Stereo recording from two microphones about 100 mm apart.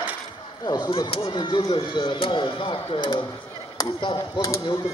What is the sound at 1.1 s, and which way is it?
Speech, 60° left (ahead or behind).